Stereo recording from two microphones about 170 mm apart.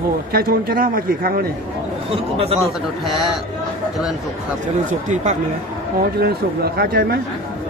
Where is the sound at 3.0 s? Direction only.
Centre (ahead or behind).